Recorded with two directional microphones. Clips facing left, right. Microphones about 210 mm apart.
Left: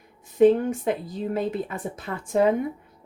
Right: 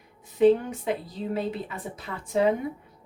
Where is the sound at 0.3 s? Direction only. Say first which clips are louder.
Left 2 dB; 45° left (ahead or behind).